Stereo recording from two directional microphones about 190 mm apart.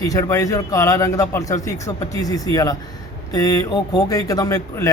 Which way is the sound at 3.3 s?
20° left (ahead or behind).